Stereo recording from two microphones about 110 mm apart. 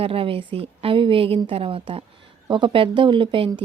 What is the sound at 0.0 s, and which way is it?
A woman's voice, 55° right (ahead or behind).